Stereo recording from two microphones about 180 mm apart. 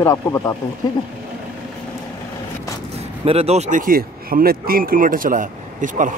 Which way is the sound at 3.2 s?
35° right (ahead or behind).